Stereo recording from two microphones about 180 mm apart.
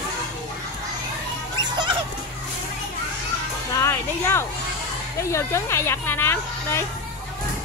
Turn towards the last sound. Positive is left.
turn(degrees=15)  # may be behind; listen again after turning